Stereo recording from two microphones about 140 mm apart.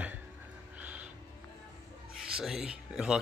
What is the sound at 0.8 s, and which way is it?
Music, 10° right (ahead or behind).